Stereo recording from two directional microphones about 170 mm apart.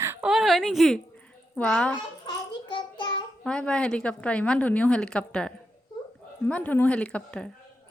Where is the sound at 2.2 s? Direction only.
25° left (ahead or behind).